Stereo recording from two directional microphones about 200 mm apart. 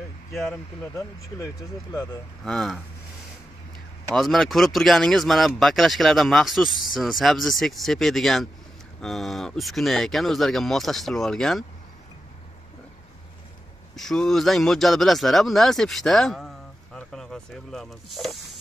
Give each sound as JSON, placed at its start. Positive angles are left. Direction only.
{"t": 0.4, "sound": "speech", "side_deg": 15}
{"t": 2.4, "sound": "speech", "side_deg": 0}
{"t": 4.1, "sound": "speech", "side_deg": 0}
{"t": 13.9, "sound": "speech", "side_deg": 0}